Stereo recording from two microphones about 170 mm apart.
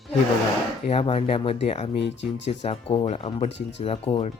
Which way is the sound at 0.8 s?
35° left (ahead or behind).